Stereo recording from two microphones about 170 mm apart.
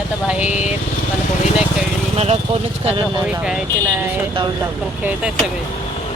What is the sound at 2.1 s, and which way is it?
Speech, 40° right (ahead or behind).